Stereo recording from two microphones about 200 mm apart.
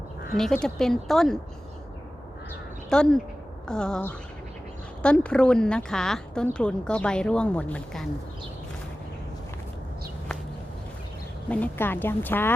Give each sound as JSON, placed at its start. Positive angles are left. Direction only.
{"t": 0.3, "sound": "speech", "side_deg": 0}
{"t": 2.9, "sound": "speech", "side_deg": 5}
{"t": 11.4, "sound": "speech", "side_deg": 5}